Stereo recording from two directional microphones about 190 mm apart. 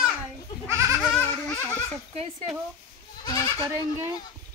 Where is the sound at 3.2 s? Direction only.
20° left (ahead or behind).